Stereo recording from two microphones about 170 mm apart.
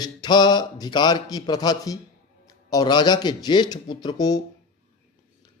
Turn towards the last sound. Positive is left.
turn(degrees=25)  # may be behind; listen again after turning